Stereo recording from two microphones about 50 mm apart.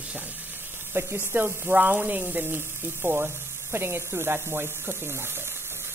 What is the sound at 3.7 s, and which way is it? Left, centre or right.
Speech, right.